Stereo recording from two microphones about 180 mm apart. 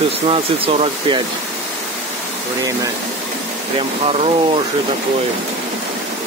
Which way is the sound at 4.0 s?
35° right (ahead or behind).